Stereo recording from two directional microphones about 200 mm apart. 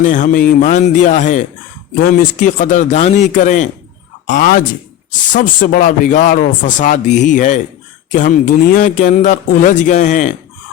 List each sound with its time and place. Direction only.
0.0 s speech: 40° left (ahead or behind)